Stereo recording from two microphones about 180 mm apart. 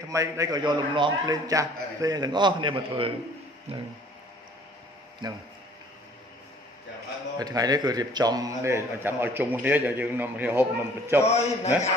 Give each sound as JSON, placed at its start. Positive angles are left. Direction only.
{"t": 0.1, "sound": "a man's voice", "side_deg": -20}
{"t": 5.2, "sound": "a man's voice", "side_deg": -25}
{"t": 7.3, "sound": "a man's voice", "side_deg": -20}
{"t": 11.2, "sound": "a man's voice", "side_deg": 35}